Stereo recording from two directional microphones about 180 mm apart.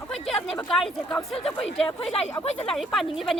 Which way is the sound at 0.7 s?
Centre (ahead or behind).